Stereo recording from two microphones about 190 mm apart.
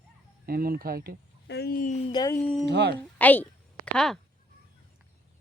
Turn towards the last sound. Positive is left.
turn(degrees=5)  # may be behind; listen again after turning